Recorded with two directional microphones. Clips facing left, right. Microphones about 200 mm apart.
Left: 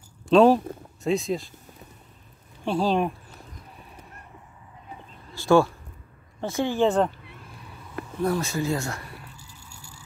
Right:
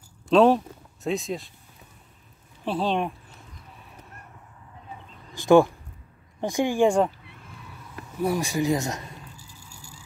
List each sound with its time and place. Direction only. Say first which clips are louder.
0.3 s speech: left 1 dB; centre (ahead or behind)
2.6 s speech: left 2 dB; centre (ahead or behind)
5.3 s a sound: right 2 dB; 15° right (ahead or behind)
6.4 s speech: right 2 dB; 15° right (ahead or behind)
8.2 s speech: right 1 dB; 15° right (ahead or behind)